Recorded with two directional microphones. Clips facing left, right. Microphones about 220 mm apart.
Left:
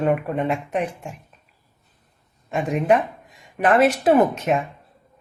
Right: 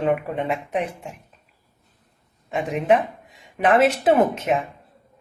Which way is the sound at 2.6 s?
Centre (ahead or behind).